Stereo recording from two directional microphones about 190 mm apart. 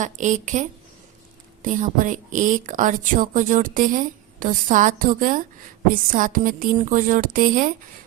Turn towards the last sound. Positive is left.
turn(degrees=-45)  # may be behind; listen again after turning